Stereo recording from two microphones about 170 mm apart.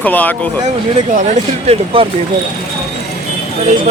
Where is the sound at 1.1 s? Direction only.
45° right (ahead or behind).